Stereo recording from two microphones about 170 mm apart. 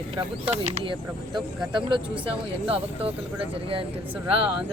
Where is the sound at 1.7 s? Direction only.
30° right (ahead or behind).